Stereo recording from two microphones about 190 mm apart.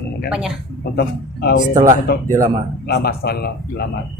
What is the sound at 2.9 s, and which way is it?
Speech, 55° left (ahead or behind).